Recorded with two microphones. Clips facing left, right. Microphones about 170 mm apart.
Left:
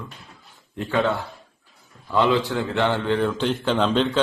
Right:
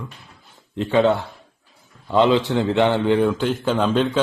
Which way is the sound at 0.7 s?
20° right (ahead or behind).